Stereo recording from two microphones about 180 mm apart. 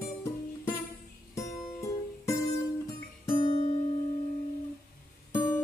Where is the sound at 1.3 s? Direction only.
15° left (ahead or behind).